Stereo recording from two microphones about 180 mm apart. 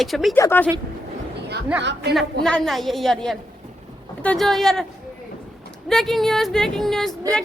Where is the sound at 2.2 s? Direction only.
5° left (ahead or behind).